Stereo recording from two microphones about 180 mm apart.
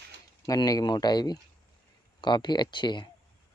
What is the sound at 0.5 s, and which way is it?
Speech, 20° left (ahead or behind).